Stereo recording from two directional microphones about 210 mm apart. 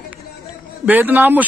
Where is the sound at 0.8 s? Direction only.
10° right (ahead or behind).